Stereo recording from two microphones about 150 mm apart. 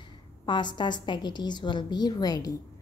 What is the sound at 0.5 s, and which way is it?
A woman's voice, 30° left (ahead or behind).